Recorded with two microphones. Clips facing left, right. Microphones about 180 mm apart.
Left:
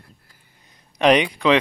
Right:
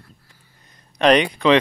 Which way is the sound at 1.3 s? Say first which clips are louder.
Right 2 dB; 5° left (ahead or behind).